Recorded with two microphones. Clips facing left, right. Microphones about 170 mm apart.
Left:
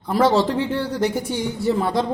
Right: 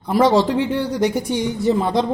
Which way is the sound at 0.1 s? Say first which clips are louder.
Right 2 dB; 15° right (ahead or behind).